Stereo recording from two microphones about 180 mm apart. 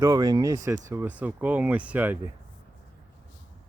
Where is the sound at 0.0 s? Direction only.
20° right (ahead or behind).